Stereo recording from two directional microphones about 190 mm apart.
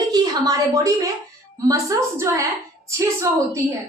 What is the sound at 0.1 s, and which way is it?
A woman's voice, 20° right (ahead or behind).